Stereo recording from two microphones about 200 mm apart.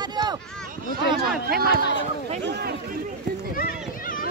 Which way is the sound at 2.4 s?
60° right (ahead or behind).